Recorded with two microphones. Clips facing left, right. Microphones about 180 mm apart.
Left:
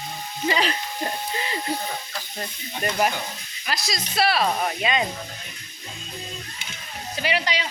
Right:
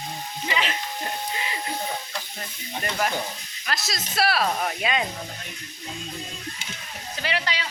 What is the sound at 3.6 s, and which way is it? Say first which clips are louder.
Speech: left 2 dB; centre (ahead or behind).